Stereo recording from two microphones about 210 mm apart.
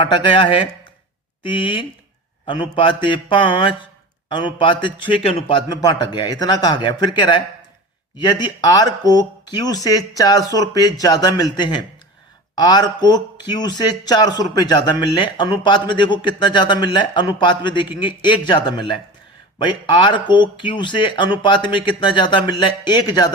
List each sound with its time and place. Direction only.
0.0 s a man's voice: 25° left (ahead or behind)